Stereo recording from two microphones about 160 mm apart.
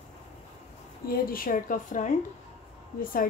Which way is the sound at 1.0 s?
65° left (ahead or behind).